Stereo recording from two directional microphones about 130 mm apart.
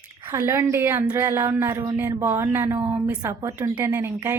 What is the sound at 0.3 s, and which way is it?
A woman's voice, 20° right (ahead or behind).